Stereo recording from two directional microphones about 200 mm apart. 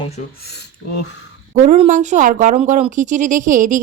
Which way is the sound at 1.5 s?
35° right (ahead or behind).